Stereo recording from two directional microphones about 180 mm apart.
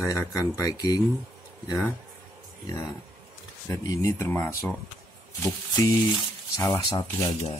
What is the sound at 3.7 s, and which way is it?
Speech, 20° left (ahead or behind).